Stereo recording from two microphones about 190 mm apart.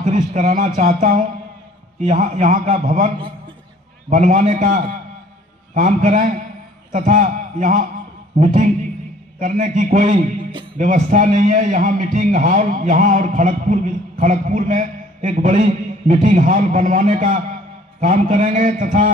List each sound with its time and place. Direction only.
0.0 s a man's voice: 40° right (ahead or behind)
4.1 s a man's voice: 40° right (ahead or behind)